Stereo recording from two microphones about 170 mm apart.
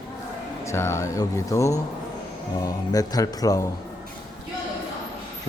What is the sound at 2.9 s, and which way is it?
Speech, 20° left (ahead or behind).